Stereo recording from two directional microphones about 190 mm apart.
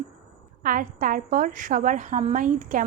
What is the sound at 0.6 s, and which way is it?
A woman's voice, 45° right (ahead or behind).